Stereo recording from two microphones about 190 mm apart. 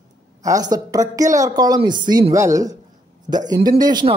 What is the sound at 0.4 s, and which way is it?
Speech, 20° right (ahead or behind).